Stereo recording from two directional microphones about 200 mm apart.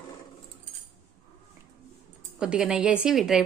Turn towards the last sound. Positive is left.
turn(degrees=0)  # may be behind; listen again after turning